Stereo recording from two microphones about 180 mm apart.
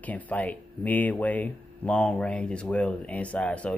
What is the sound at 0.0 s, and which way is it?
Speech, 10° left (ahead or behind).